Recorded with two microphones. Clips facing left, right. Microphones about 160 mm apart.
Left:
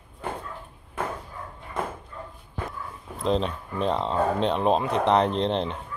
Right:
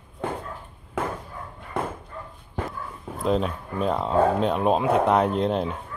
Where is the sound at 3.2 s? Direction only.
5° right (ahead or behind).